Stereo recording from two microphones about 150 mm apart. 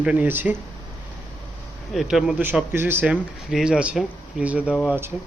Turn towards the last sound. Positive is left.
turn(degrees=-10)  # may be behind; listen again after turning